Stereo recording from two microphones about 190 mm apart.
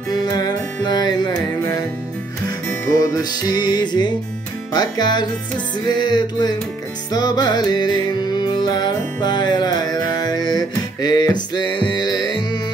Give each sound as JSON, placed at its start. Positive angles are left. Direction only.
{"t": 0.1, "sound": "music", "side_deg": 20}
{"t": 3.0, "sound": "music", "side_deg": 20}